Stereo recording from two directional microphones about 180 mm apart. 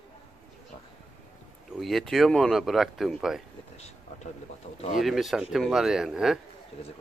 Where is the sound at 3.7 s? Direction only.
35° left (ahead or behind).